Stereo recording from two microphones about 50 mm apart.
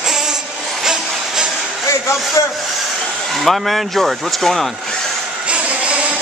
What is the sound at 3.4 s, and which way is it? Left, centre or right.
Speech, centre.